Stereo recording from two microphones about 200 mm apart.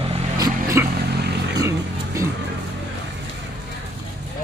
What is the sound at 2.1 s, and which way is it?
Music, 15° right (ahead or behind).